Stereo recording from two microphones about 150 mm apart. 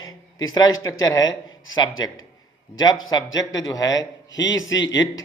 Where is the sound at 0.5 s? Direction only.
25° left (ahead or behind).